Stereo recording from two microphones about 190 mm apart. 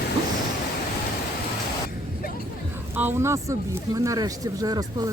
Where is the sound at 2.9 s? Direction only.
10° right (ahead or behind).